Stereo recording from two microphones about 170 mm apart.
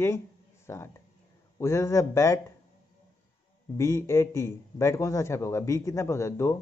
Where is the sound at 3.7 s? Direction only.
15° left (ahead or behind).